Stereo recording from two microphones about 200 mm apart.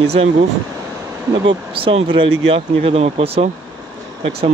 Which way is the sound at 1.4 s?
25° right (ahead or behind).